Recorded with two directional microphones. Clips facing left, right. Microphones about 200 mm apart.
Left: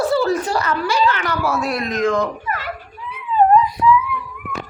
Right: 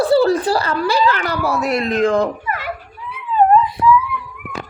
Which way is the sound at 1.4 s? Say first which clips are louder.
Right 4 dB; 20° right (ahead or behind).